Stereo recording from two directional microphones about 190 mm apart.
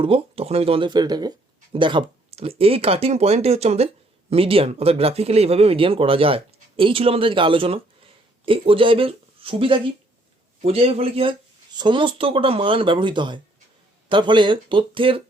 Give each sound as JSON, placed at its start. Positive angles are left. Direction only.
{"t": 0.0, "sound": "speech", "side_deg": -30}